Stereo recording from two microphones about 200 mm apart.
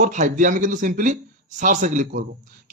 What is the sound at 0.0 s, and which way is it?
A man's voice, 40° right (ahead or behind).